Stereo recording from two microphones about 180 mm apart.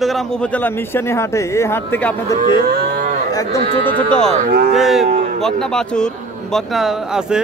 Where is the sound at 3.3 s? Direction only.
15° left (ahead or behind).